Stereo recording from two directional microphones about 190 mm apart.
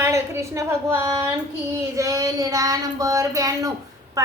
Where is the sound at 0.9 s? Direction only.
15° right (ahead or behind).